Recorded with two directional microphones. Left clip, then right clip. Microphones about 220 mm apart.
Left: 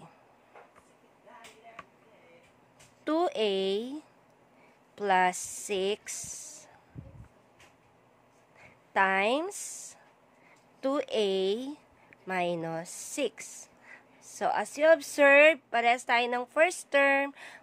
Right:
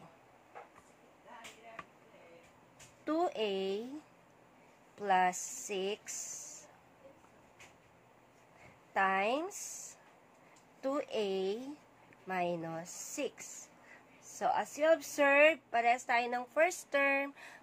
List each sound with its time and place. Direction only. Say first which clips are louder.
3.1 s a woman's voice: left 6 dB; 45° left (ahead or behind)
8.9 s a woman's voice: left 6 dB; 45° left (ahead or behind)
10.8 s a woman's voice: left 7 dB; 45° left (ahead or behind)